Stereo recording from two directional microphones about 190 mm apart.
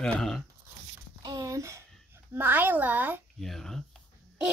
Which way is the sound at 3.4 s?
Centre (ahead or behind).